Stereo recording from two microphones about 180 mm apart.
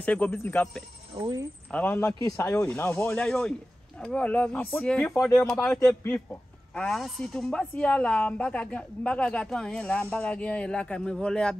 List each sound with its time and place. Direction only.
0.0 s speech: 10° left (ahead or behind)
1.1 s speech: 25° right (ahead or behind)
1.7 s speech: 10° left (ahead or behind)
2.4 s a woman's voice: 10° left (ahead or behind)